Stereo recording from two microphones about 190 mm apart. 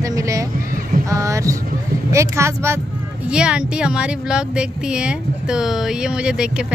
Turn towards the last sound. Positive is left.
turn(degrees=-5)  # may be behind; listen again after turning